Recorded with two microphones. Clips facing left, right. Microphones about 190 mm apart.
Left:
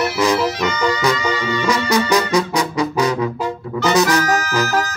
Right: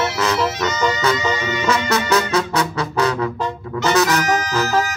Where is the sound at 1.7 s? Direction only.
15° left (ahead or behind).